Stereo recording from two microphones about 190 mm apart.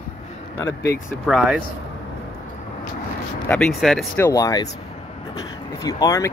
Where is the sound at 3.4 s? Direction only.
5° left (ahead or behind).